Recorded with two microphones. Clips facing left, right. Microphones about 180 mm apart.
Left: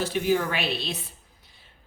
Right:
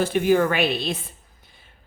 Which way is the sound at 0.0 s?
55° right (ahead or behind).